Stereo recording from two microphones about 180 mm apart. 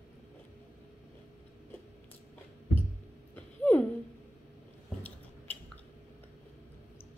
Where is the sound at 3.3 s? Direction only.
10° left (ahead or behind).